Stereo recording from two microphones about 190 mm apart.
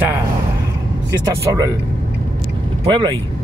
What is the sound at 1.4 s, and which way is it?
Speech, 20° right (ahead or behind).